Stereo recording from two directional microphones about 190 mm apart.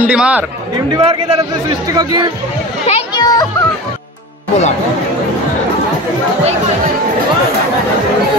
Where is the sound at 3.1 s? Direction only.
20° left (ahead or behind).